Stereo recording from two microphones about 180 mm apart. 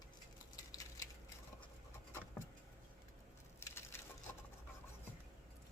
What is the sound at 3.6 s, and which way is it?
Wood, 15° left (ahead or behind).